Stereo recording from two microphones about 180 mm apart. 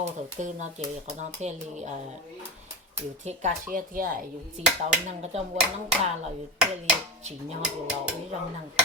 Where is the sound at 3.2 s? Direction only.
45° right (ahead or behind).